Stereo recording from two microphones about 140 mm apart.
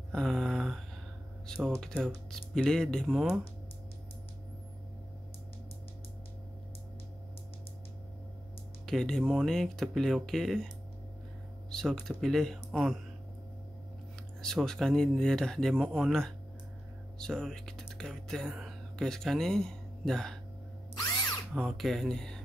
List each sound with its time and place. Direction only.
0.1 s a sound: 5° left (ahead or behind)
1.5 s speech: 5° left (ahead or behind)
8.8 s speech: 5° left (ahead or behind)
11.7 s speech: 5° left (ahead or behind)
14.4 s speech: 5° left (ahead or behind)
15.7 s speech: 10° right (ahead or behind)
16.1 s speech: 5° left (ahead or behind)
21.5 s speech: centre (ahead or behind)